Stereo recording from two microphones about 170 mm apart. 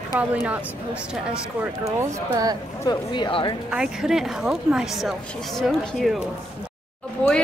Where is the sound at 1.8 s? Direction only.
15° right (ahead or behind).